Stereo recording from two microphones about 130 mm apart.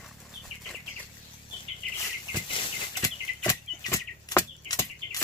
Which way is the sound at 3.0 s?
30° left (ahead or behind).